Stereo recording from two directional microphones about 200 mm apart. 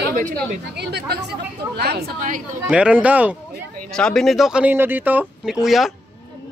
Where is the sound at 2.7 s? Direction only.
5° right (ahead or behind).